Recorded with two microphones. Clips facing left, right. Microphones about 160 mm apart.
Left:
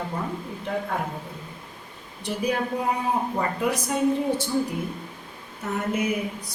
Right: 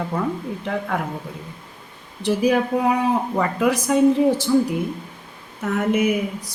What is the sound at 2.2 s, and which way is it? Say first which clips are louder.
A woman's voice: right 7 dB; 90° right.